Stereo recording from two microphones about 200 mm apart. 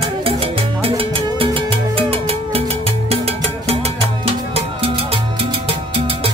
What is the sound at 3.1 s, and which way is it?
Music, 30° right (ahead or behind).